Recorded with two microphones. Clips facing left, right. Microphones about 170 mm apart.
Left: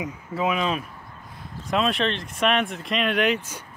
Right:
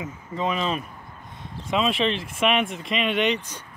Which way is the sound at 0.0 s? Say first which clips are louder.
Left 2 dB; 10° left (ahead or behind).